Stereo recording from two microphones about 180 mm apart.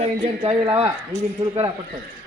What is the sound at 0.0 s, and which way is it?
Speech, 30° right (ahead or behind).